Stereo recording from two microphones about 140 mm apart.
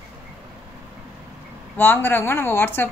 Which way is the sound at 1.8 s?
15° left (ahead or behind).